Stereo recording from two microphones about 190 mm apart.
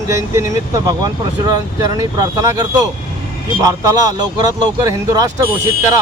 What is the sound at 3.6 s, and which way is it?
Speech, 20° right (ahead or behind).